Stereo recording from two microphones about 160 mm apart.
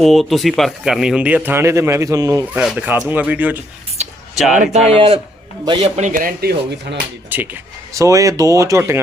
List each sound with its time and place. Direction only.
0.0 s a man's voice: centre (ahead or behind); by 2.4 s 20° right (ahead or behind)
2.5 s a man's voice: 5° right (ahead or behind)
4.5 s speech: 50° right (ahead or behind)
4.9 s a man's voice: 35° right (ahead or behind)
5.8 s speech: 50° right (ahead or behind); by 7.0 s 80° right
7.3 s a man's voice: 10° right (ahead or behind)